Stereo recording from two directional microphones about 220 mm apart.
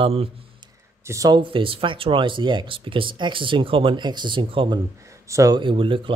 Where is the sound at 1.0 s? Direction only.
15° right (ahead or behind).